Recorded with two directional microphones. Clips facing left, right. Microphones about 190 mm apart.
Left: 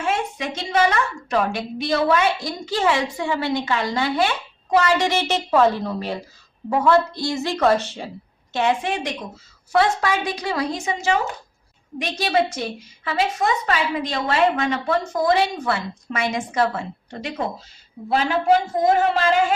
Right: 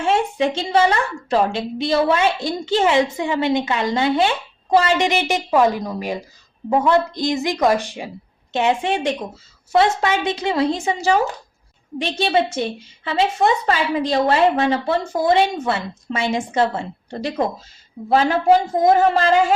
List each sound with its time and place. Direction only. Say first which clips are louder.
0.0 s a woman's voice: right 6 dB; 30° right (ahead or behind)
18.8 s a woman's voice: right 3 dB; 25° right (ahead or behind)